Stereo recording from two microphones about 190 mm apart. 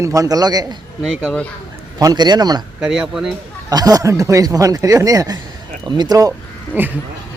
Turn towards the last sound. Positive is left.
turn(degrees=-15)  # may be behind; listen again after turning